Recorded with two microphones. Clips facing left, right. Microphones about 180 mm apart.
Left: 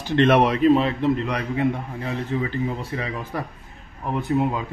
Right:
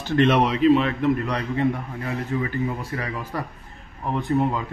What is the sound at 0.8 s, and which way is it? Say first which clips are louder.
Speech: even; 25° left (ahead or behind).